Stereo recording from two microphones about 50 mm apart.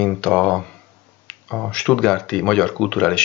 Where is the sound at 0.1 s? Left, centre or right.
Left.